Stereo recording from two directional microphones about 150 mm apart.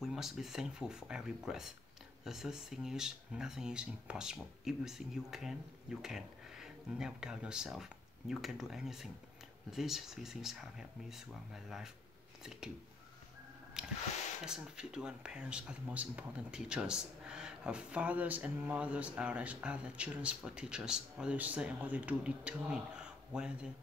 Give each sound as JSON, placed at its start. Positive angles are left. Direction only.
{"t": 0.0, "sound": "speech", "side_deg": 0}
{"t": 13.8, "sound": "speech", "side_deg": -5}